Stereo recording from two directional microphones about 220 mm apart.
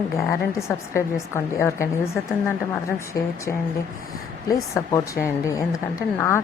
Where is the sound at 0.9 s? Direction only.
10° left (ahead or behind).